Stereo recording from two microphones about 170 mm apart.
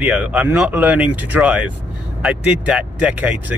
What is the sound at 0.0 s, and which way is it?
Speech, 10° right (ahead or behind).